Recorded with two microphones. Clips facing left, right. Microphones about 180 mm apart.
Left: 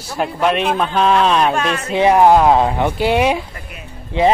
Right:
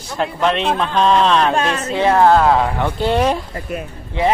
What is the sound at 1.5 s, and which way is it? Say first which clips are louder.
Speech: right 1 dB; 30° right (ahead or behind).